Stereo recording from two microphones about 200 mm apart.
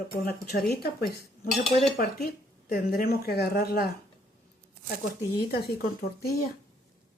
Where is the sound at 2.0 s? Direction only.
50° left (ahead or behind).